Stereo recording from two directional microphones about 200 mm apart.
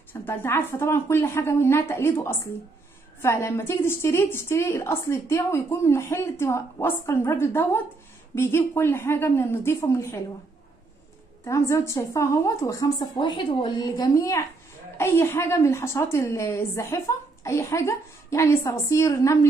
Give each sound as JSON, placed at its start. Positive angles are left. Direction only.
{"t": 0.1, "sound": "a woman's voice", "side_deg": 10}
{"t": 11.4, "sound": "a woman's voice", "side_deg": 15}